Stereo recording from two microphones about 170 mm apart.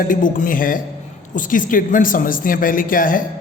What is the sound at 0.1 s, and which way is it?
A woman's voice, 50° left (ahead or behind).